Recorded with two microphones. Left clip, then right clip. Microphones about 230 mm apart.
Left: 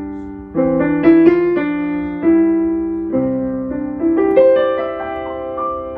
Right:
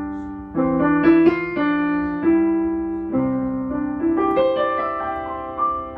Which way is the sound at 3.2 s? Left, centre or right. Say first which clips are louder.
Left 4 dB; right.